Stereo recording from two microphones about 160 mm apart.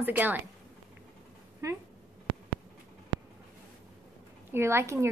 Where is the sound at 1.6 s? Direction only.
20° right (ahead or behind).